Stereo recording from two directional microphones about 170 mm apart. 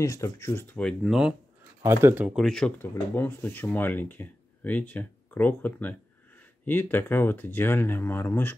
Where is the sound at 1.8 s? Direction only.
15° right (ahead or behind).